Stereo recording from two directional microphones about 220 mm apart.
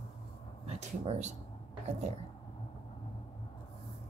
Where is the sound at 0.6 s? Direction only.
30° right (ahead or behind).